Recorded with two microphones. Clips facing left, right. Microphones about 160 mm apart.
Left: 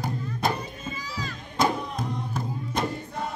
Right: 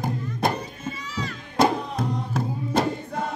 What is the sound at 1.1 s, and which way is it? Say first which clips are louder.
Children playing: right 5 dB; 75° right (ahead or behind).